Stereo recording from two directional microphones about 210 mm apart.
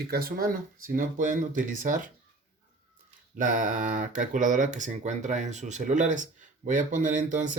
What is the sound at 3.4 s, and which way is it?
Speech, 40° right (ahead or behind).